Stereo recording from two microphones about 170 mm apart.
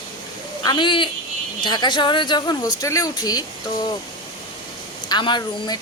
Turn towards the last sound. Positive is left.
turn(degrees=25)  # may be behind; listen again after turning